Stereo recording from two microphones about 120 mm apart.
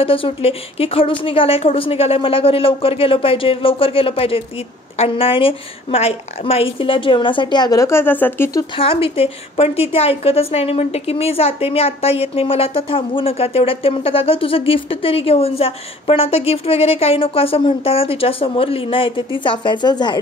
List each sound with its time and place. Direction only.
0.0 s a woman's voice: 50° left (ahead or behind); by 8.5 s 15° left (ahead or behind)
8.7 s a woman's voice: 50° left (ahead or behind)